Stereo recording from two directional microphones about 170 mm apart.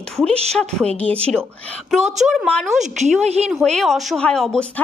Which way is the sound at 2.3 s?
5° left (ahead or behind).